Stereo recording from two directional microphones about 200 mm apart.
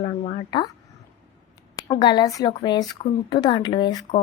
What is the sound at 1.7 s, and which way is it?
A woman's voice, 20° left (ahead or behind).